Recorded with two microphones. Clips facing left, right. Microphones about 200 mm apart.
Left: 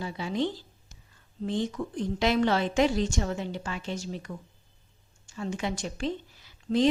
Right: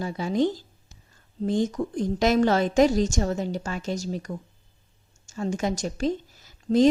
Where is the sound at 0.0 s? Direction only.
45° right (ahead or behind).